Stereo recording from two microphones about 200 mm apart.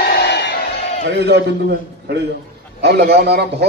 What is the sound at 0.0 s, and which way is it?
Music, 55° left (ahead or behind).